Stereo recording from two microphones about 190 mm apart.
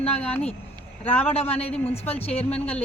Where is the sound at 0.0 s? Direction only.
10° left (ahead or behind).